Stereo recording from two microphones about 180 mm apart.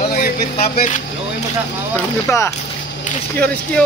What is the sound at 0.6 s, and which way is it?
Speech, 40° left (ahead or behind).